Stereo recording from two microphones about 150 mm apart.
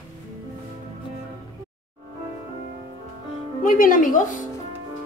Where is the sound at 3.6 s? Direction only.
65° left (ahead or behind).